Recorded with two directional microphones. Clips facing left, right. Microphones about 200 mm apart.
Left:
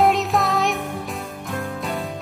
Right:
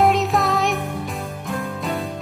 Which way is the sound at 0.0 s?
Centre (ahead or behind).